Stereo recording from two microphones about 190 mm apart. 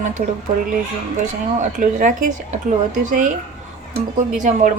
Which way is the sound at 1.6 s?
45° right (ahead or behind).